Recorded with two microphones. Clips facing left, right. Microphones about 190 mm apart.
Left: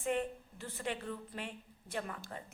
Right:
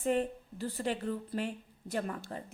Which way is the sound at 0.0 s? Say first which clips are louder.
Right 5 dB; 35° right (ahead or behind).